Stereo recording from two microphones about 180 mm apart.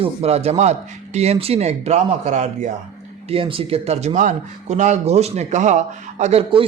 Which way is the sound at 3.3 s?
30° right (ahead or behind).